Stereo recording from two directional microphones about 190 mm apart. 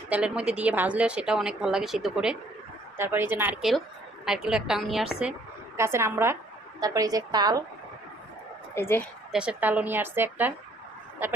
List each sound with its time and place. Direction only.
0.1 s a woman's voice: 5° right (ahead or behind)
5.7 s a woman's voice: 15° right (ahead or behind)
8.7 s speech: 10° left (ahead or behind)
9.3 s a woman's voice: 5° right (ahead or behind)